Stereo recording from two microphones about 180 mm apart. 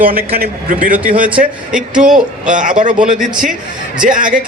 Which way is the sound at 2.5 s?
45° right (ahead or behind).